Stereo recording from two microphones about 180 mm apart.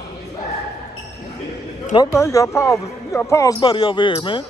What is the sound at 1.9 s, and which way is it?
A man's voice, 20° left (ahead or behind).